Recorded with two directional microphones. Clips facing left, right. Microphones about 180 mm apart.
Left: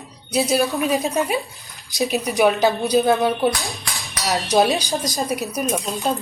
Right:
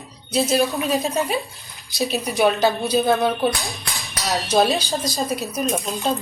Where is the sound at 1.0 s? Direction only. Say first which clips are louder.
Left 1 dB; 15° left (ahead or behind).